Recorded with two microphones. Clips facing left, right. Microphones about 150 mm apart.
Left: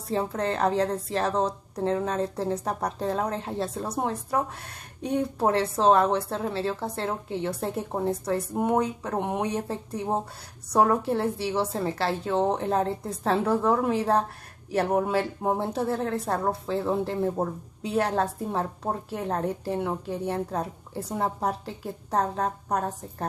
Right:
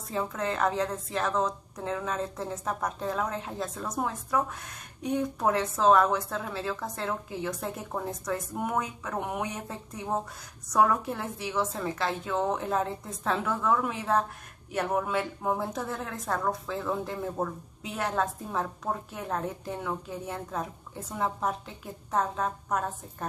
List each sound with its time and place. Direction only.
0.1 s a woman's voice: 35° left (ahead or behind)